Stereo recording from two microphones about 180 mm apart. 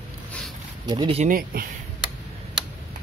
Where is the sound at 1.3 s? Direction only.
55° right (ahead or behind).